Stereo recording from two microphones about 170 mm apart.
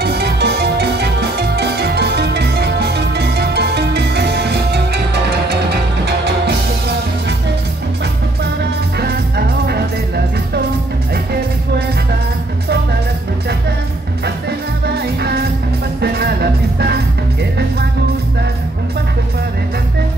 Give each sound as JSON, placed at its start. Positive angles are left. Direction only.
{"t": 0.0, "sound": "music", "side_deg": -70}
{"t": 9.7, "sound": "music", "side_deg": -70}
{"t": 16.0, "sound": "music", "side_deg": -70}